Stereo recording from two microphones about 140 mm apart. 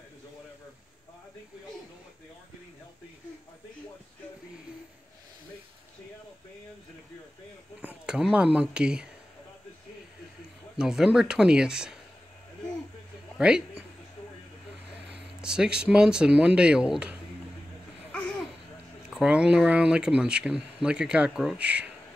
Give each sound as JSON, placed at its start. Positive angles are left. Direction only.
{"t": 7.8, "sound": "speech", "side_deg": -5}
{"t": 10.8, "sound": "speech", "side_deg": -5}
{"t": 13.4, "sound": "speech", "side_deg": -5}
{"t": 15.0, "sound": "speech", "side_deg": -5}
{"t": 19.0, "sound": "speech", "side_deg": -10}